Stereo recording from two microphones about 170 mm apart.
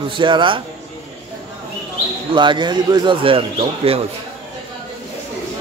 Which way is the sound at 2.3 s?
25° right (ahead or behind).